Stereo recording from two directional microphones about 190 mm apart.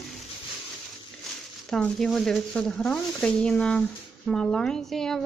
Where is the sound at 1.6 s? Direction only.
5° left (ahead or behind).